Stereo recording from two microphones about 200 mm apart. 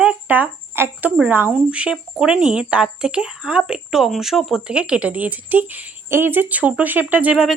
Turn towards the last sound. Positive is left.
turn(degrees=-5)  # may be behind; listen again after turning